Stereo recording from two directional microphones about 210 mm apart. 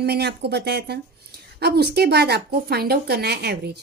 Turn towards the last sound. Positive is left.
turn(degrees=-50)  # may be behind; listen again after turning